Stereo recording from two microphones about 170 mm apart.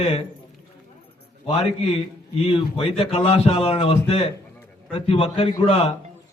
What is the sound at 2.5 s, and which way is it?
A man's voice, 35° left (ahead or behind).